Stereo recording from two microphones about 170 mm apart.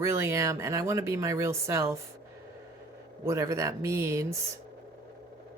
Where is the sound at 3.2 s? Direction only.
20° right (ahead or behind).